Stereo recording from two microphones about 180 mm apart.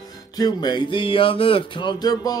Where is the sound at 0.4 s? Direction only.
25° left (ahead or behind).